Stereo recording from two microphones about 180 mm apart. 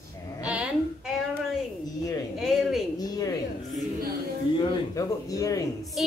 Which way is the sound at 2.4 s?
Centre (ahead or behind).